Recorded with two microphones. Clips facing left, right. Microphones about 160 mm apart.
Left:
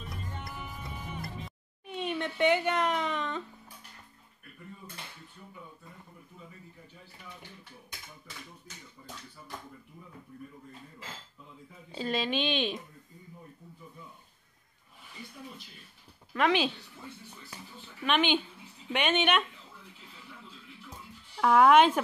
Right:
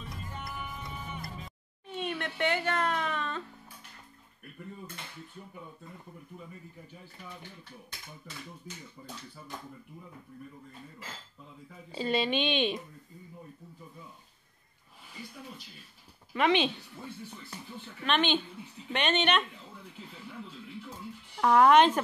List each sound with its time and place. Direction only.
1.9 s a sound: 15° left (ahead or behind)
11.9 s a woman's voice: centre (ahead or behind)
16.3 s a woman's voice: centre (ahead or behind)
18.0 s speech: 10° left (ahead or behind)
21.4 s a woman's voice: 5° left (ahead or behind)